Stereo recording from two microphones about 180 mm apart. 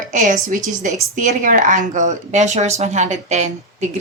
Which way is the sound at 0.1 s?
45° right (ahead or behind).